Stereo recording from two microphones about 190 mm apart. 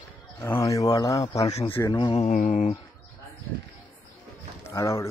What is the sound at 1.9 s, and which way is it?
Mantra, 30° left (ahead or behind).